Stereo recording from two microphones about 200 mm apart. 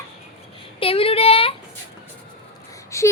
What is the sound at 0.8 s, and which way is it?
Speech, 30° left (ahead or behind).